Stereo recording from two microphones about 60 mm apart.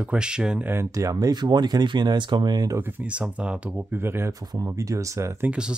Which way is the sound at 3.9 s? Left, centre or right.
Right.